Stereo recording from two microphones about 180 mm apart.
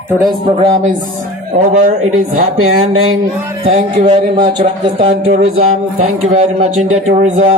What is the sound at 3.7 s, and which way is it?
Speech, 40° right (ahead or behind).